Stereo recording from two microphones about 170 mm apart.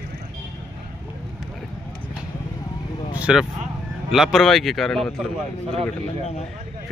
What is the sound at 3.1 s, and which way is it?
Vehicle, 5° right (ahead or behind).